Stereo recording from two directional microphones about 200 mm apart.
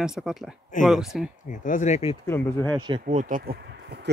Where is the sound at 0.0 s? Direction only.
5° right (ahead or behind).